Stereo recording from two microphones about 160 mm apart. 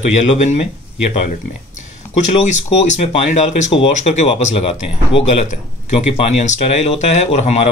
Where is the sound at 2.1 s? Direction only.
50° left (ahead or behind).